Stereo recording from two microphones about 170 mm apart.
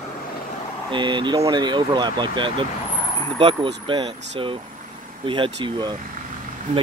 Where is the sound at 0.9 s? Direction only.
25° right (ahead or behind).